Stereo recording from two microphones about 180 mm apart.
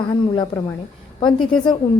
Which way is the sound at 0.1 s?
25° left (ahead or behind).